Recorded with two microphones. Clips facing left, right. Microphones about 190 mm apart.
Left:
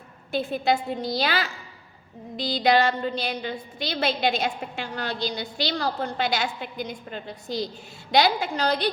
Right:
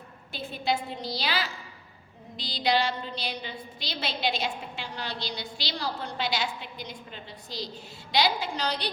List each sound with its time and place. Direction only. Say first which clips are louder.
0.3 s a woman's voice: left 6 dB; 50° left (ahead or behind)